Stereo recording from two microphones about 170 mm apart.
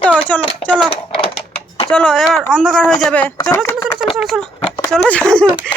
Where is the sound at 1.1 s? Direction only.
30° left (ahead or behind).